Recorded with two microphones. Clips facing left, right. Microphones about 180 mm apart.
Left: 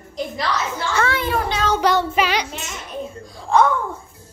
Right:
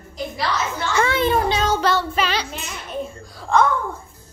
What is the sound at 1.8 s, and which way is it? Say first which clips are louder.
Child singing: left 2 dB; 15° left (ahead or behind).